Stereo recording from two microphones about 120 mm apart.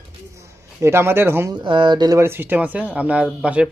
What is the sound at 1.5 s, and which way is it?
Speech, 40° right (ahead or behind).